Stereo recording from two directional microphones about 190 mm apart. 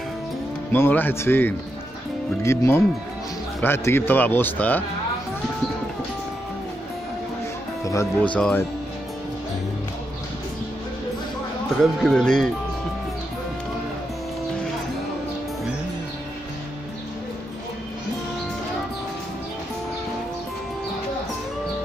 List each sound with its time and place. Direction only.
0.7 s speech: 10° left (ahead or behind)
7.8 s speech: 15° left (ahead or behind)
8.4 s speech: 5° left (ahead or behind)
11.8 s speech: centre (ahead or behind)